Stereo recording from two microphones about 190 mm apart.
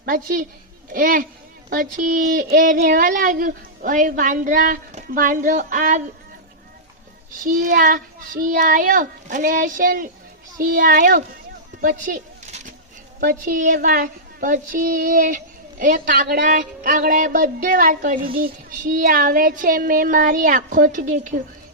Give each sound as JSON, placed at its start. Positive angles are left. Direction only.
{"t": 0.0, "sound": "speech", "side_deg": -45}
{"t": 7.4, "sound": "speech", "side_deg": -45}
{"t": 11.8, "sound": "a sound", "side_deg": -45}
{"t": 13.1, "sound": "speech", "side_deg": -50}